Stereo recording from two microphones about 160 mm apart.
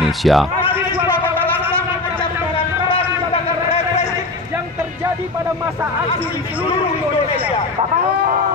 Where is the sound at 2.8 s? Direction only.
35° left (ahead or behind).